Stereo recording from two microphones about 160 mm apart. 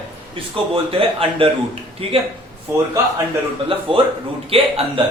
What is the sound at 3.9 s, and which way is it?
Speech, 35° right (ahead or behind).